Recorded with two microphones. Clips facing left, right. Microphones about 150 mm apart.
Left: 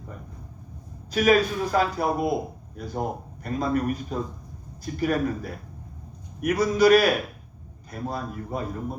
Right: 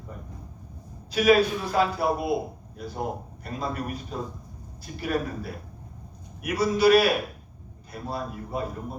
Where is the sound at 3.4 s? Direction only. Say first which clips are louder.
Left 7 dB; 45° left (ahead or behind).